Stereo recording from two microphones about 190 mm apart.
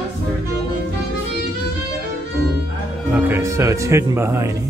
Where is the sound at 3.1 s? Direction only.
15° right (ahead or behind).